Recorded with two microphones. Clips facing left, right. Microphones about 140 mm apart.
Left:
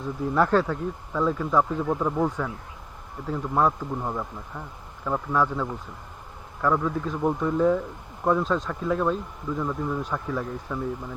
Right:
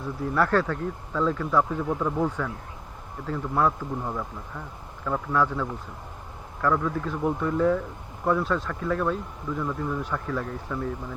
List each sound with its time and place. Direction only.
0.3 s a man's voice: 15° left (ahead or behind)